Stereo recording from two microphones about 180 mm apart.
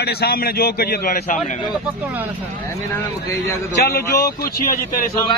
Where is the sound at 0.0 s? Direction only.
65° left (ahead or behind).